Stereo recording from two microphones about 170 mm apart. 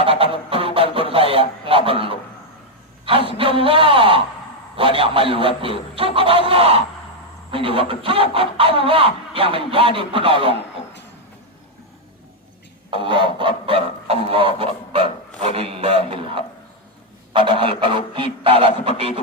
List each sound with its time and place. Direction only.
0.0 s a sound: 35° right (ahead or behind)
4.8 s goose: 30° right (ahead or behind)
12.9 s goose: 30° right (ahead or behind)
17.3 s goose: 30° right (ahead or behind)